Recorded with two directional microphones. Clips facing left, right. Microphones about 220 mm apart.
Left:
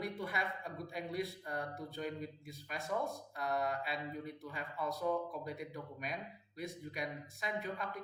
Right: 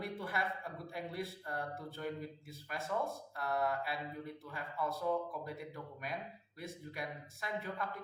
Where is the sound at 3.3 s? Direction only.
20° left (ahead or behind).